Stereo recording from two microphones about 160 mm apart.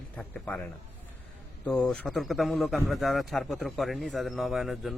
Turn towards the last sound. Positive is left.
turn(degrees=0)  # may be behind; listen again after turning